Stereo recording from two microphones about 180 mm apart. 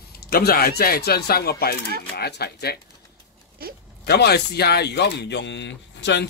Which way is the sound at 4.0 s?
65° left (ahead or behind).